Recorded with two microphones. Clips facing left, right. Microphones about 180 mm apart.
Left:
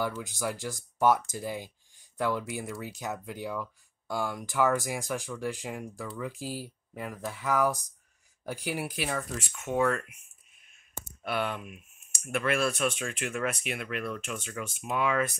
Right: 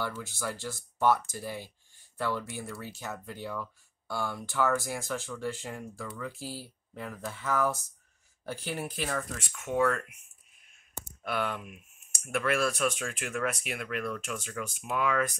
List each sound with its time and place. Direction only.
0.0 s speech: 15° left (ahead or behind)
11.2 s speech: centre (ahead or behind)